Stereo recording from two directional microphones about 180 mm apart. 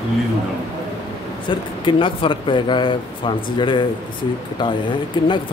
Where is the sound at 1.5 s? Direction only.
25° left (ahead or behind).